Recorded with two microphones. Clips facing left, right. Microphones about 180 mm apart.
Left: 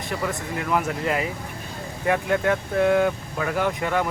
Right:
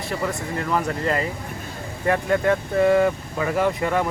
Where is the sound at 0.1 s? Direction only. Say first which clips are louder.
Right 1 dB; 5° left (ahead or behind).